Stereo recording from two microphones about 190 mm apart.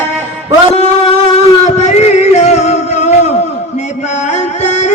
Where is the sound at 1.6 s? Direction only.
35° left (ahead or behind).